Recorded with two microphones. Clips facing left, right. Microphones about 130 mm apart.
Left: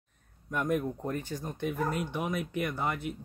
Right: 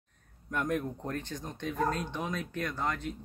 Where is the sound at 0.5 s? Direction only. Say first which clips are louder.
Left 2 dB; 10° left (ahead or behind).